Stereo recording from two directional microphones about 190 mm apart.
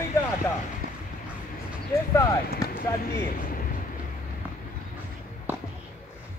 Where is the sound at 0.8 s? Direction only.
50° right (ahead or behind).